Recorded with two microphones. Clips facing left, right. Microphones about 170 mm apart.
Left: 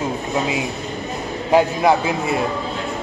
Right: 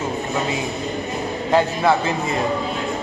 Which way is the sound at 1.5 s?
10° left (ahead or behind).